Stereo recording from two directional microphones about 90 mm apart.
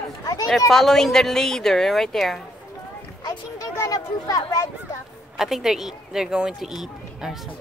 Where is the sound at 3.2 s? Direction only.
35° left (ahead or behind).